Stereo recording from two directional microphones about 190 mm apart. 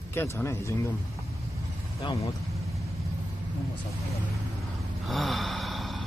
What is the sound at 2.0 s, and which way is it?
Speech, 25° left (ahead or behind).